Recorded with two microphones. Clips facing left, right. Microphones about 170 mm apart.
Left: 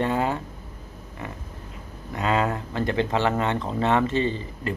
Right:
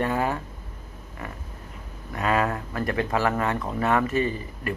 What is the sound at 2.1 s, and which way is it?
Speech, 20° left (ahead or behind).